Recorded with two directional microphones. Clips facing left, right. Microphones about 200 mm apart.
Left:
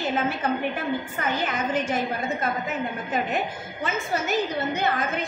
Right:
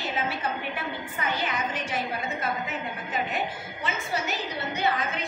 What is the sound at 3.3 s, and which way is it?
A woman's voice, 45° left (ahead or behind).